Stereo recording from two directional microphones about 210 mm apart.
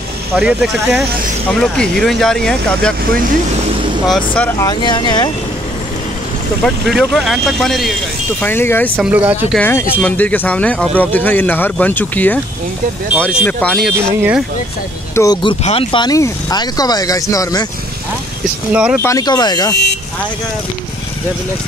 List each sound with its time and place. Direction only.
0.4 s speech: 5° right (ahead or behind)
4.1 s speech: 10° left (ahead or behind)
6.6 s speech: centre (ahead or behind)
8.9 s speech: 10° right (ahead or behind)
9.6 s speech: 10° left (ahead or behind)
13.4 s speech: 5° left (ahead or behind)
15.1 s speech: 20° left (ahead or behind)
18.7 s speech: 5° right (ahead or behind)
19.0 s speech: 15° left (ahead or behind)